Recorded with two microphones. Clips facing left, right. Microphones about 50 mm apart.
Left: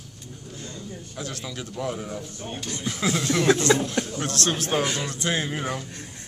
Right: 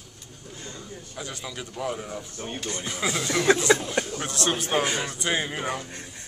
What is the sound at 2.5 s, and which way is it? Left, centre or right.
Speech, centre.